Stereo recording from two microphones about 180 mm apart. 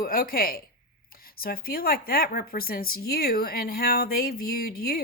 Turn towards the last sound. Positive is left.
turn(degrees=55)  # may be behind; listen again after turning